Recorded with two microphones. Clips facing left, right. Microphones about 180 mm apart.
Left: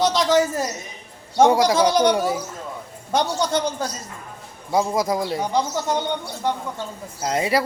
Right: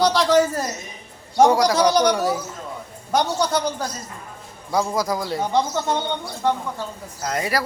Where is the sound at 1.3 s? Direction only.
25° left (ahead or behind).